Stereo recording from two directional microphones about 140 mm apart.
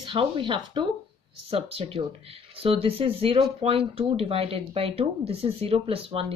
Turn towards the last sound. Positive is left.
turn(degrees=-45)  # may be behind; listen again after turning